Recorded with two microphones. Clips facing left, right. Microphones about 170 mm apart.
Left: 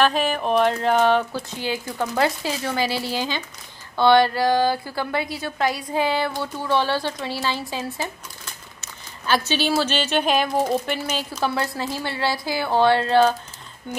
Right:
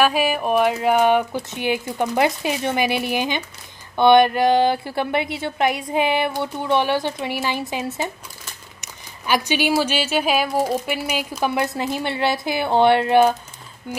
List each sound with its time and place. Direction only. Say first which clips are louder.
0.0 s a woman's voice: right 2 dB; 10° right (ahead or behind)
8.8 s speech: even; 15° right (ahead or behind)
13.9 s speech: even; 5° right (ahead or behind)